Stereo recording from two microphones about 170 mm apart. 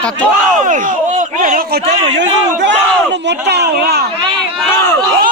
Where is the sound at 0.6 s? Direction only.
50° right (ahead or behind).